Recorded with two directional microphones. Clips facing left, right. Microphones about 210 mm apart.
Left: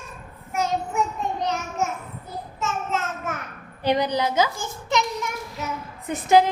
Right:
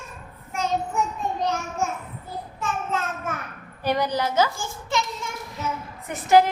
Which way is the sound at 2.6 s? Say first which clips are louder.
Left 1 dB; 20° left (ahead or behind).